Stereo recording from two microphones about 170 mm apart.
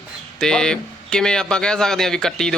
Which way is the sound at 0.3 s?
5° left (ahead or behind).